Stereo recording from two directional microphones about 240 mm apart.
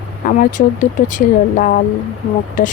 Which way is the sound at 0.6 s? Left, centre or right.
Left.